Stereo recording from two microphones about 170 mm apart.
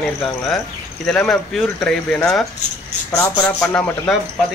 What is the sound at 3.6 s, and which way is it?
Speech, 5° left (ahead or behind).